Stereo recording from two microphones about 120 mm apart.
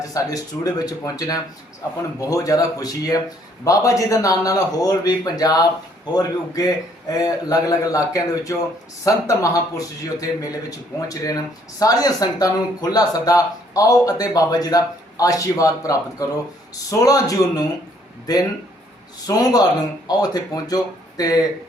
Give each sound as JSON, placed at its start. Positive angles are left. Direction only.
{"t": 0.0, "sound": "a man's voice", "side_deg": 30}